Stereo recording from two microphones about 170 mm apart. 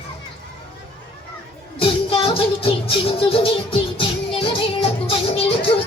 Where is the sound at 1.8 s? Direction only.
35° left (ahead or behind).